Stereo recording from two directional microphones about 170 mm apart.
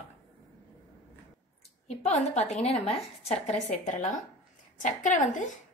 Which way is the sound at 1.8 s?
40° left (ahead or behind).